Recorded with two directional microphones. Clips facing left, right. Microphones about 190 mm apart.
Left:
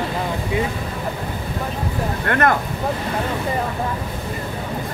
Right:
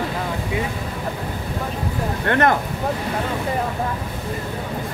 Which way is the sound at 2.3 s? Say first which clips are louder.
Right 1 dB; 20° right (ahead or behind).